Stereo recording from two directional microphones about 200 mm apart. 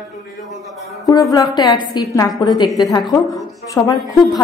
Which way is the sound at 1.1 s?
15° left (ahead or behind).